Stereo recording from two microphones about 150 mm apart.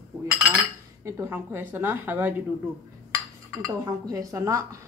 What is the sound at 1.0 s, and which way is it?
A woman's voice, 15° right (ahead or behind).